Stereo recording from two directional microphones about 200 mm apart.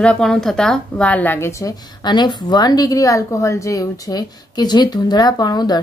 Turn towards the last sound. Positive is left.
turn(degrees=20)  # may be behind; listen again after turning